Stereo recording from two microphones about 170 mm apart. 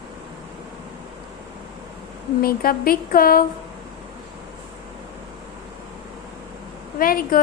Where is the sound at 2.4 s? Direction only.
60° left (ahead or behind).